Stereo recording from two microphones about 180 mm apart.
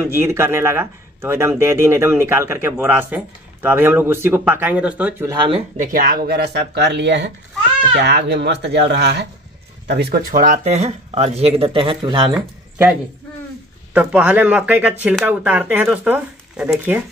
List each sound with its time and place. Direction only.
0.0 s speech: 15° right (ahead or behind)
5.3 s speech: 25° right (ahead or behind)
5.8 s speech: 50° right (ahead or behind)
6.2 s a child's voice: 65° right (ahead or behind); by 12.4 s 25° right (ahead or behind)
12.4 s speech: 5° right (ahead or behind)
13.9 s speech: 10° right (ahead or behind)